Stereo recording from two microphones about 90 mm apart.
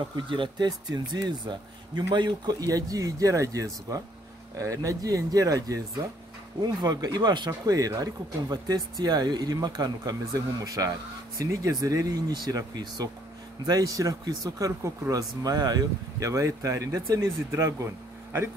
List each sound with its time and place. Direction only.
0.3 s speech: 65° right (ahead or behind)
0.7 s speech: 50° right (ahead or behind)
2.7 s speech: 40° right (ahead or behind)